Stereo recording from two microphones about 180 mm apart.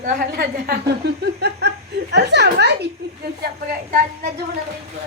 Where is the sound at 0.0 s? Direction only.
55° right (ahead or behind).